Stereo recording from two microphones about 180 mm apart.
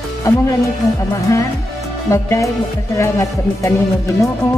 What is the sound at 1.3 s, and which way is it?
Speech, 15° left (ahead or behind).